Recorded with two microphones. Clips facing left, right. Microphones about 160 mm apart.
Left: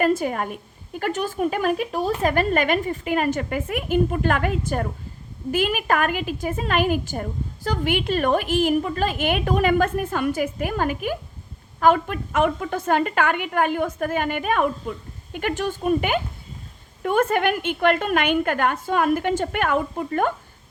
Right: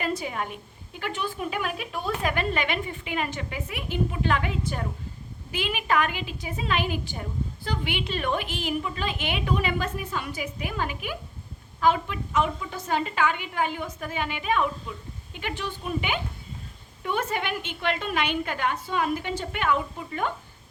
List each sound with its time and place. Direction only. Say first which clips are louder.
0.0 s a woman's voice: left 8 dB; 50° left (ahead or behind)